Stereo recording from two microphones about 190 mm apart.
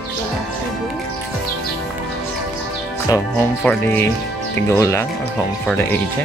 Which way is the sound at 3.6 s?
10° left (ahead or behind).